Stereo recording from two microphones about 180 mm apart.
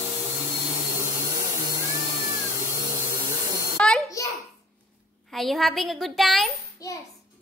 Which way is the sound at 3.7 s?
5° left (ahead or behind).